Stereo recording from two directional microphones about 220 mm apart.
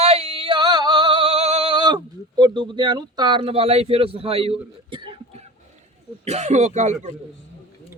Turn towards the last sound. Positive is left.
turn(degrees=-30)  # may be behind; listen again after turning